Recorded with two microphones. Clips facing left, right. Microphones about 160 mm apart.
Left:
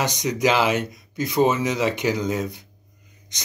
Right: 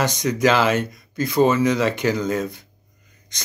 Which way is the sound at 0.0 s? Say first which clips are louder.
Right 3 dB; 15° left (ahead or behind).